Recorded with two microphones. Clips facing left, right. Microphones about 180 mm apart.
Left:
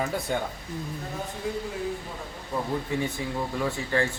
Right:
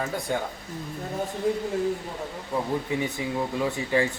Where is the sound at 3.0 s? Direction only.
15° right (ahead or behind).